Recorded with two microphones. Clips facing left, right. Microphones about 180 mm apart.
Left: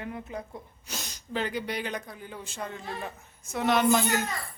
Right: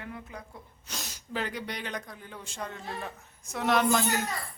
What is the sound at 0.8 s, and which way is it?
Speech, centre (ahead or behind).